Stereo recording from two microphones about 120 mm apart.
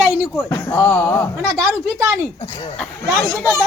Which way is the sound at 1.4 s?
25° right (ahead or behind).